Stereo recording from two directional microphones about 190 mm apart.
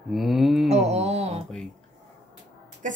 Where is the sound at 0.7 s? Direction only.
35° right (ahead or behind).